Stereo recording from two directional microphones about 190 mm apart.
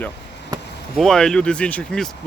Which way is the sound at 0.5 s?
20° right (ahead or behind).